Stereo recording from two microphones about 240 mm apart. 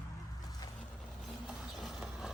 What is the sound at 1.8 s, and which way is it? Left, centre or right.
Vehicle, centre.